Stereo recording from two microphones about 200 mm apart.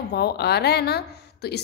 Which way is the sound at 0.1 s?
55° left (ahead or behind).